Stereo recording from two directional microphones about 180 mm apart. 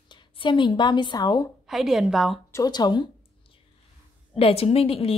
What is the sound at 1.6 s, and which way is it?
Speech, centre (ahead or behind).